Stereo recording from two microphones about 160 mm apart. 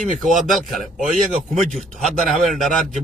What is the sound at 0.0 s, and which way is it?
Speech, 50° right (ahead or behind).